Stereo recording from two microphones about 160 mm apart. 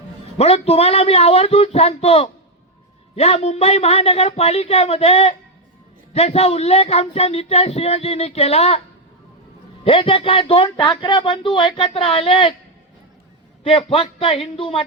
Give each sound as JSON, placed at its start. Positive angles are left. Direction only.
{"t": 0.3, "sound": "speech", "side_deg": 40}
{"t": 9.8, "sound": "speech", "side_deg": 35}
{"t": 13.7, "sound": "speech", "side_deg": 35}